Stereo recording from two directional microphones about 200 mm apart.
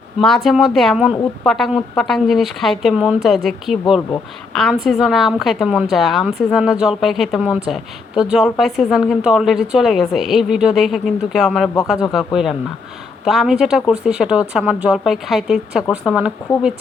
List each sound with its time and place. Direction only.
0.2 s a woman's voice: centre (ahead or behind)